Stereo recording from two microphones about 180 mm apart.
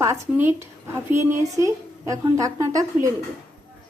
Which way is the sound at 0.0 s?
15° right (ahead or behind).